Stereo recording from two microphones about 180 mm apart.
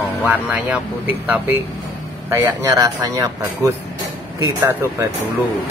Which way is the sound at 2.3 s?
15° right (ahead or behind).